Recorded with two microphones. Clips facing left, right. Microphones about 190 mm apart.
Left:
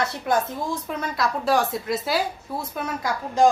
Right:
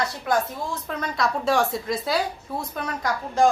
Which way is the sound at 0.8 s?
5° left (ahead or behind).